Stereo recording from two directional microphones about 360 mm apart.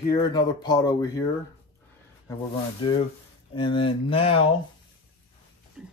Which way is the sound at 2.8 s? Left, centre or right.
Centre.